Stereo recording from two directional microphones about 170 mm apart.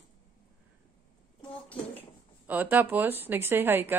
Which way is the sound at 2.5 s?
10° right (ahead or behind).